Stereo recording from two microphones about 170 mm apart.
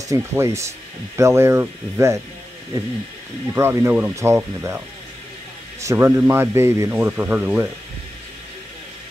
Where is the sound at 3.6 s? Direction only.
15° right (ahead or behind).